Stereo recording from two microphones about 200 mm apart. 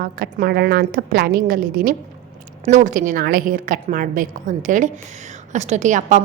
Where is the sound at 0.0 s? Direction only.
45° right (ahead or behind).